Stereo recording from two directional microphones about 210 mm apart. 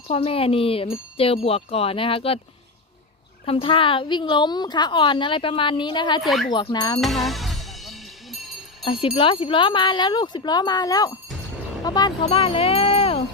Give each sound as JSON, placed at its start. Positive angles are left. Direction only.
{"t": 0.1, "sound": "a woman's voice", "side_deg": 25}
{"t": 3.4, "sound": "a woman's voice", "side_deg": 25}
{"t": 6.2, "sound": "speech", "side_deg": 0}
{"t": 6.5, "sound": "a woman's voice", "side_deg": 20}
{"t": 7.0, "sound": "music", "side_deg": 0}
{"t": 8.8, "sound": "a woman's voice", "side_deg": 25}